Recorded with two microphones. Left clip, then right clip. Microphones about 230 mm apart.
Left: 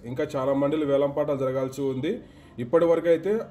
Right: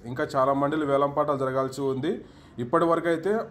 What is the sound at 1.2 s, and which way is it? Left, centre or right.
Speech, right.